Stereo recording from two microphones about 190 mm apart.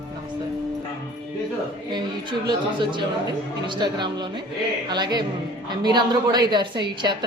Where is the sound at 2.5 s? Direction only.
25° right (ahead or behind).